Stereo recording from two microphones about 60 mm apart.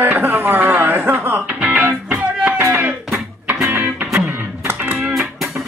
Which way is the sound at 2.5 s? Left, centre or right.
Right.